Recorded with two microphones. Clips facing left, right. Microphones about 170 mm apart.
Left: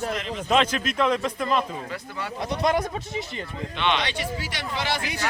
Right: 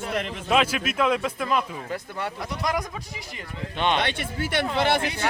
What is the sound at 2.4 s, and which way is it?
Speech, 25° left (ahead or behind).